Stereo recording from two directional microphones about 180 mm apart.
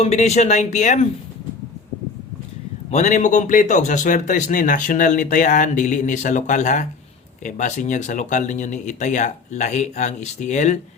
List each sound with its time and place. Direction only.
0.0 s speech: 35° left (ahead or behind)
2.9 s a man's voice: 40° left (ahead or behind)